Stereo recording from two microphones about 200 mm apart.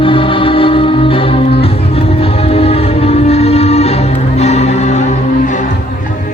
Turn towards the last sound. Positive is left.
turn(degrees=35)  # may be behind; listen again after turning